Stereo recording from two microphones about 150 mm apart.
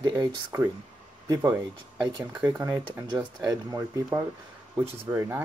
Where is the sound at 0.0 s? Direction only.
30° right (ahead or behind).